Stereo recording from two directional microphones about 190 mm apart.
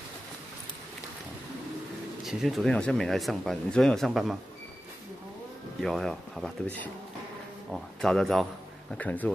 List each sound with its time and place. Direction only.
2.2 s speech: centre (ahead or behind)
5.8 s speech: centre (ahead or behind)